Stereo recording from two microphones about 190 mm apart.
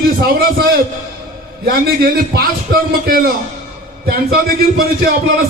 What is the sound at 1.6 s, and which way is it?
A man's voice, 55° right (ahead or behind).